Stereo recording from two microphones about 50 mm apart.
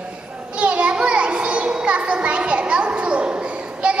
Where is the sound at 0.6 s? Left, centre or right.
Right.